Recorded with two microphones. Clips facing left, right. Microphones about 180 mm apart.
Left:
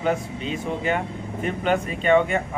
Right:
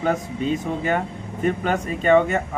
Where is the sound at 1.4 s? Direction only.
40° right (ahead or behind).